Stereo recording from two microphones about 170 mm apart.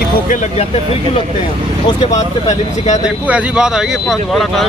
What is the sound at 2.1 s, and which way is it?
Speech, 45° left (ahead or behind).